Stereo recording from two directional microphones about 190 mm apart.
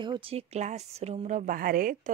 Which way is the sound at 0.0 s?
25° right (ahead or behind).